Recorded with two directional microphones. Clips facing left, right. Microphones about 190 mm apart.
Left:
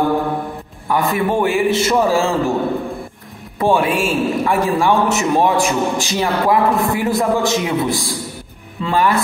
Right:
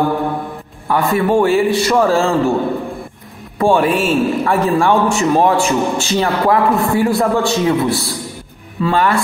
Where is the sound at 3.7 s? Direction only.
10° left (ahead or behind).